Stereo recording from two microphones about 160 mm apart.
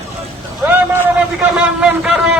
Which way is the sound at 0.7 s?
10° right (ahead or behind).